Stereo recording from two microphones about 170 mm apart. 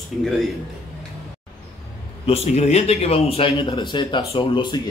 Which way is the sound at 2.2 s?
40° left (ahead or behind).